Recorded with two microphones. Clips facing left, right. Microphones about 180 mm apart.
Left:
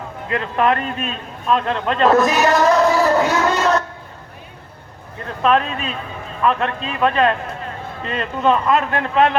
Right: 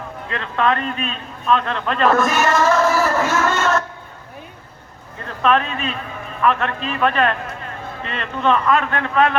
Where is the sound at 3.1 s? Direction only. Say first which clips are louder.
Left 2 dB; 15° left (ahead or behind).